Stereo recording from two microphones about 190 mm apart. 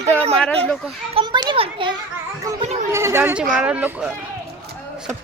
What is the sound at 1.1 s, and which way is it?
Speech, 25° right (ahead or behind).